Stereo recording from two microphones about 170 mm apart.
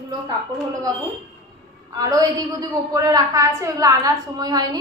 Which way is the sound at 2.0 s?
20° right (ahead or behind).